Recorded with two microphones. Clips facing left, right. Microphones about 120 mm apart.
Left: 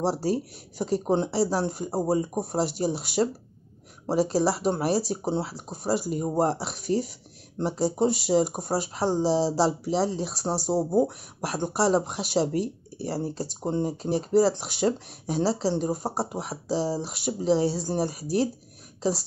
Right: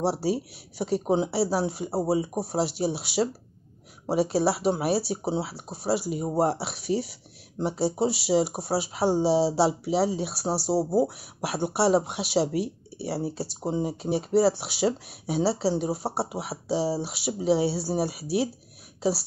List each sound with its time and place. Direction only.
0.0 s speech: 5° right (ahead or behind)